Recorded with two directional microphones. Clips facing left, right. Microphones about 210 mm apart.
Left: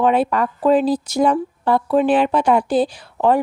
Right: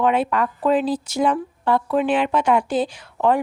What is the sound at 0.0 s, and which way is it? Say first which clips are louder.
Speech: left 3 dB; 35° left (ahead or behind).